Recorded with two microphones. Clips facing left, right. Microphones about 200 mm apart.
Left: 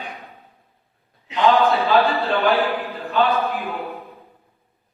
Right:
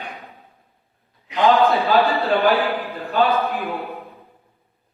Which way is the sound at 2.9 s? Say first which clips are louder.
Right 1 dB; centre (ahead or behind).